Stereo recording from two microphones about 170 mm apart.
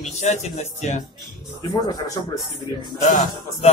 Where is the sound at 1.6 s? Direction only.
25° left (ahead or behind).